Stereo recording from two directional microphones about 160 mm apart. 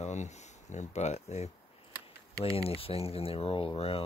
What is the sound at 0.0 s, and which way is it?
Speech, 45° left (ahead or behind).